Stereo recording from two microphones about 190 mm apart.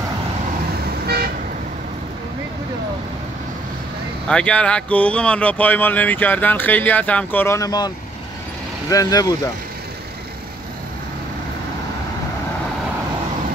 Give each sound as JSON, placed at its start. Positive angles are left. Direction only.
{"t": 1.0, "sound": "vehicle", "side_deg": -55}
{"t": 4.3, "sound": "speech", "side_deg": 5}